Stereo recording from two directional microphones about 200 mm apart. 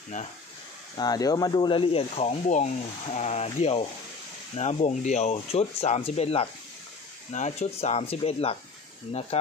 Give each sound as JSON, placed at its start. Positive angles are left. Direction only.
{"t": 0.9, "sound": "speech", "side_deg": 20}